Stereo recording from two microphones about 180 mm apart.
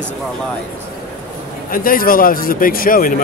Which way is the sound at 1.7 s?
50° left (ahead or behind).